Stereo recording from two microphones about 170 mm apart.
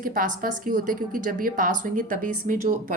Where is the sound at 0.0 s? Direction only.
55° right (ahead or behind).